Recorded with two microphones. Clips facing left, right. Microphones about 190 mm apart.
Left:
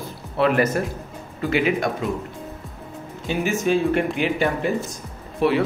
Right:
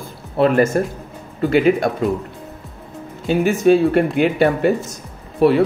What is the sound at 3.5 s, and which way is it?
Speech, 35° right (ahead or behind).